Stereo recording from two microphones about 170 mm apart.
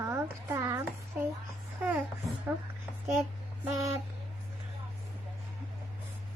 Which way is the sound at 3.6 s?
15° right (ahead or behind).